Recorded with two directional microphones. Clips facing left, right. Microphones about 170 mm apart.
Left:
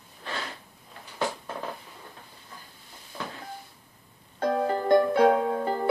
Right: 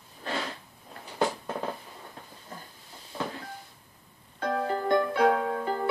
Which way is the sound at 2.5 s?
45° right (ahead or behind).